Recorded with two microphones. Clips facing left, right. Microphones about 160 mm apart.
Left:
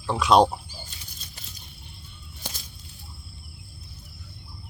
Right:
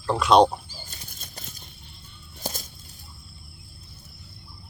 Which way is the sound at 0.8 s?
50° right (ahead or behind).